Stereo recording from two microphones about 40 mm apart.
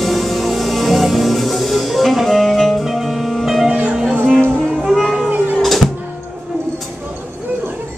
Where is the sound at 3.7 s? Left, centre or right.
Right.